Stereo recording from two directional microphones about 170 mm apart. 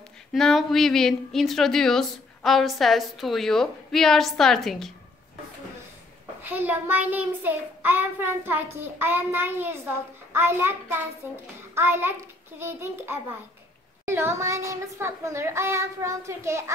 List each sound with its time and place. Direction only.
0.3 s a woman's voice: centre (ahead or behind)
6.4 s speech: 10° right (ahead or behind)